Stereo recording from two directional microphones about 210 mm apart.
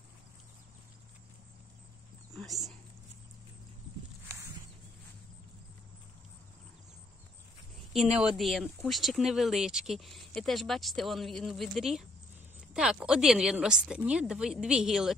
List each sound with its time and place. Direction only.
2.4 s speech: centre (ahead or behind)
7.9 s speech: centre (ahead or behind)